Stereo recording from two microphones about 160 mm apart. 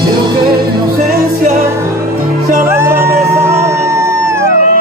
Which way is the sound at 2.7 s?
15° right (ahead or behind).